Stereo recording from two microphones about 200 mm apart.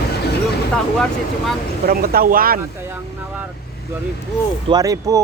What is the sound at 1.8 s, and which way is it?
Speech, 45° right (ahead or behind).